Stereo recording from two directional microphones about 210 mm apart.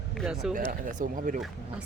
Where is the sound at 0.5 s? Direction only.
40° right (ahead or behind).